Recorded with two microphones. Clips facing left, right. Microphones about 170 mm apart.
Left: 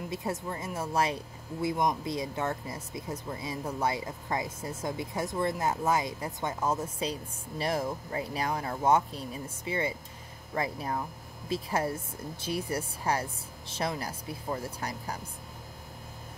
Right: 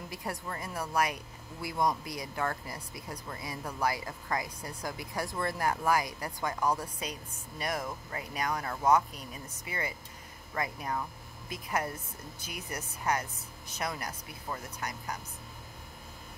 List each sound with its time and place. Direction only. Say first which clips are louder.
0.1 s speech: left 4 dB; 25° left (ahead or behind)